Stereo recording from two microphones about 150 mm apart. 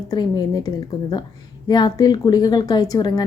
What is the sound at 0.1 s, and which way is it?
A woman's voice, 25° left (ahead or behind).